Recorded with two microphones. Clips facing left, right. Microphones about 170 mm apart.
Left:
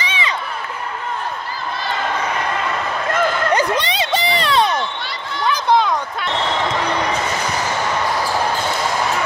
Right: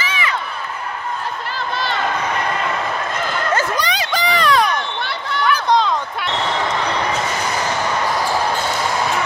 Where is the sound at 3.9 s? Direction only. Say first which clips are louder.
Left 1 dB; 25° left (ahead or behind).